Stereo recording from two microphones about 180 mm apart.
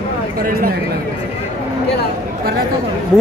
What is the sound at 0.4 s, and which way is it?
Speech, 55° right (ahead or behind).